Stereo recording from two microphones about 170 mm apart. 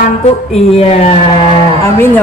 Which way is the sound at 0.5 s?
35° left (ahead or behind).